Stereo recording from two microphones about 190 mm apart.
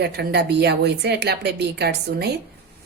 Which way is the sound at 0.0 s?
60° right (ahead or behind).